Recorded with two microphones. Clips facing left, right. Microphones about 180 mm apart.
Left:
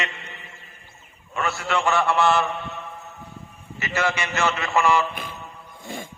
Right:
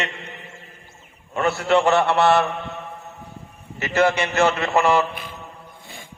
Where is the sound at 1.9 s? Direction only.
65° right (ahead or behind).